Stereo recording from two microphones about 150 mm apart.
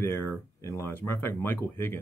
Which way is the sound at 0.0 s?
15° left (ahead or behind).